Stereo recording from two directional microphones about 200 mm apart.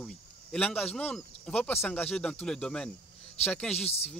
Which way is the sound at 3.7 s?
30° left (ahead or behind).